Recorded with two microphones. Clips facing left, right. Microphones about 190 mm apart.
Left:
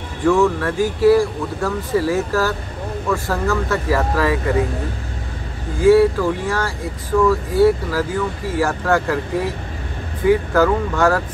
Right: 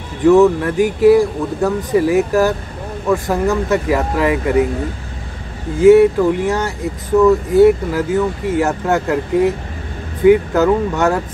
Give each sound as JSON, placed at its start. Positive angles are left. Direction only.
{"t": 0.2, "sound": "speech", "side_deg": -20}
{"t": 5.8, "sound": "speech", "side_deg": -20}
{"t": 10.2, "sound": "speech", "side_deg": -20}